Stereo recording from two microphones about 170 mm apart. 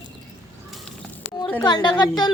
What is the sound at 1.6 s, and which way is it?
Speech, 25° left (ahead or behind).